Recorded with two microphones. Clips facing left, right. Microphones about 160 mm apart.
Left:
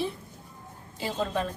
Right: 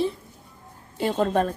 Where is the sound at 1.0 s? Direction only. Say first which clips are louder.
Right 7 dB; 55° right (ahead or behind).